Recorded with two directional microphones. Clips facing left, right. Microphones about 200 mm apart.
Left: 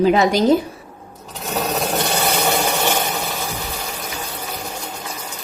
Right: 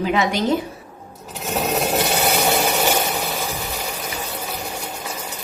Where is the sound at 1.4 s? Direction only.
5° right (ahead or behind).